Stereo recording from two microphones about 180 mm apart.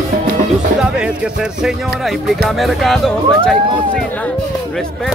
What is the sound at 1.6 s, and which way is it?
Speech, centre (ahead or behind).